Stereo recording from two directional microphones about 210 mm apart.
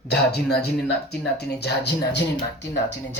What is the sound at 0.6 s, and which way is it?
Speech, 50° left (ahead or behind).